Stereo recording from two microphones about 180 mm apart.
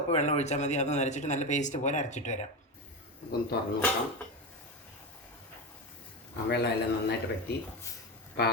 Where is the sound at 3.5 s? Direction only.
65° left (ahead or behind).